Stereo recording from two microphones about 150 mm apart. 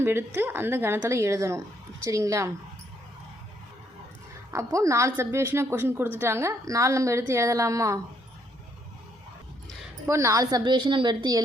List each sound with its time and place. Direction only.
0.0 s a woman's voice: 15° right (ahead or behind)
4.5 s a woman's voice: 20° right (ahead or behind)
10.1 s a woman's voice: 20° right (ahead or behind)